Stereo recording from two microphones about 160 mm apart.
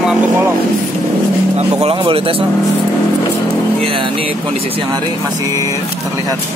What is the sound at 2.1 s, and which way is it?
Speech, 35° right (ahead or behind).